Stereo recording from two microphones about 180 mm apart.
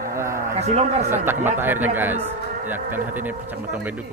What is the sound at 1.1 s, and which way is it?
Speech, 10° right (ahead or behind).